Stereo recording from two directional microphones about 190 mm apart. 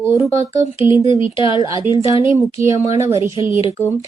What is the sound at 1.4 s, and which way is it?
Speech, 25° left (ahead or behind).